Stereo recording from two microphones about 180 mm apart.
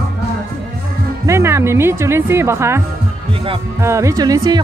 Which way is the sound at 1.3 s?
15° right (ahead or behind).